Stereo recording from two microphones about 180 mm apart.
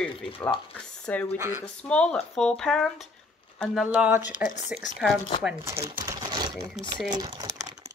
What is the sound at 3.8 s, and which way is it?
Speech, 5° right (ahead or behind).